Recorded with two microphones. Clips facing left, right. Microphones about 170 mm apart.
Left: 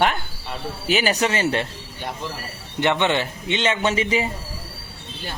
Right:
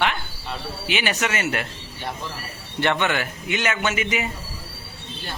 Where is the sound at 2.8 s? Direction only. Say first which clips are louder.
Left 2 dB; 20° left (ahead or behind).